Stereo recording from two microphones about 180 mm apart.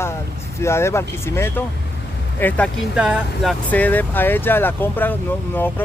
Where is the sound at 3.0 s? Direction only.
5° right (ahead or behind).